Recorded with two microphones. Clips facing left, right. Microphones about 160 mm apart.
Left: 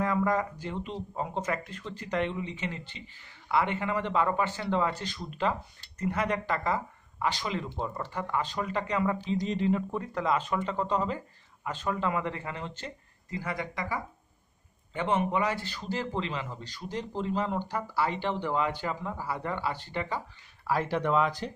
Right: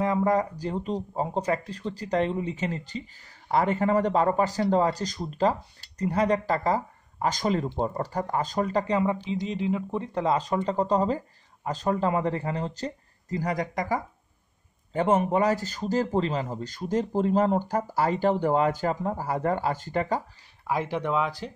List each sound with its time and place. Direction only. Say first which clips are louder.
0.0 s speech: right 4 dB; 30° right (ahead or behind)
9.1 s speech: right 1 dB; 15° right (ahead or behind)
9.8 s a man's voice: right 3 dB; 25° right (ahead or behind); by 20.2 s 45° right (ahead or behind)
20.6 s speech: right 1 dB; 15° right (ahead or behind)